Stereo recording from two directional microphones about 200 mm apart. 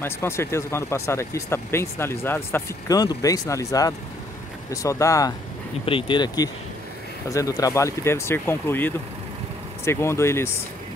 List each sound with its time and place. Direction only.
0.0 s speech: 10° left (ahead or behind)